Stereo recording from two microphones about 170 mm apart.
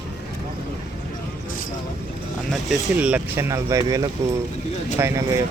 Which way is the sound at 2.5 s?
5° right (ahead or behind).